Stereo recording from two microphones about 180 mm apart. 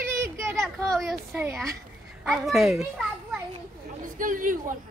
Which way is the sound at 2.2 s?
Centre (ahead or behind).